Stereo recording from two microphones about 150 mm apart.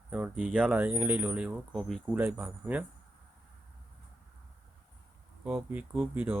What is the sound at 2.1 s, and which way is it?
Speech, 10° right (ahead or behind).